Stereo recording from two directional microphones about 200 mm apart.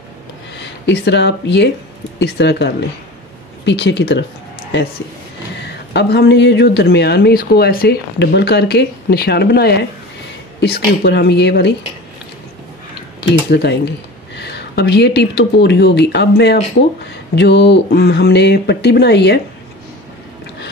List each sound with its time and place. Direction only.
0.6 s speech: 60° left (ahead or behind)
5.6 s speech: 55° left (ahead or behind)
13.5 s speech: 55° left (ahead or behind)